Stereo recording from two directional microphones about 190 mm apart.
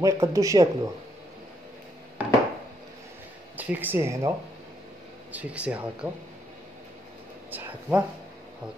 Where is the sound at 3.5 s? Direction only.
10° right (ahead or behind).